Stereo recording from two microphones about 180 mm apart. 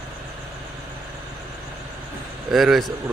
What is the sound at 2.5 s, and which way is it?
Speech, centre (ahead or behind).